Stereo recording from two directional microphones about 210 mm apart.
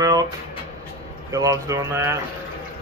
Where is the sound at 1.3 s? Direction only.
15° right (ahead or behind).